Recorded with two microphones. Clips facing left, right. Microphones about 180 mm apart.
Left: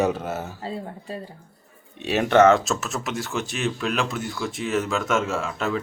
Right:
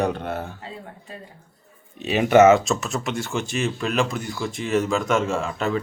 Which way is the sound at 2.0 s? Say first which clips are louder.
Right 2 dB; centre (ahead or behind).